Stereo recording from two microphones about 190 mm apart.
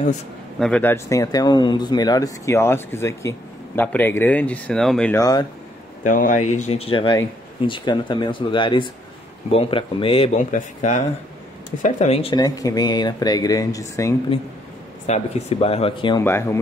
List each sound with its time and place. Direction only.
0.6 s speech: 5° left (ahead or behind)
5.1 s speech: 20° left (ahead or behind)
6.0 s speech: 45° left (ahead or behind); by 14.1 s 15° left (ahead or behind)
15.0 s speech: 35° left (ahead or behind)
16.3 s speech: 15° left (ahead or behind)